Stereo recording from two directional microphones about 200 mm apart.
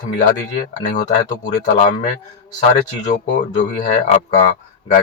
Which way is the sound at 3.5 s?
40° left (ahead or behind).